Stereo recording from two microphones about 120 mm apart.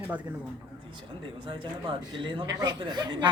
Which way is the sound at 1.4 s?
45° right (ahead or behind).